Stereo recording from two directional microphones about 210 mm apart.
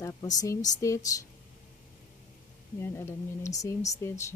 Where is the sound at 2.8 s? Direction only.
10° left (ahead or behind).